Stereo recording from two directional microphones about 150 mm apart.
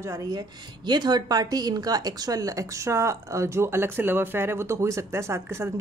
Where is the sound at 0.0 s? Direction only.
20° right (ahead or behind).